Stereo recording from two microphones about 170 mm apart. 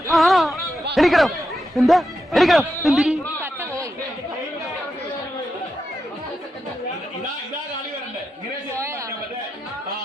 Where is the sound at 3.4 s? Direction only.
15° right (ahead or behind).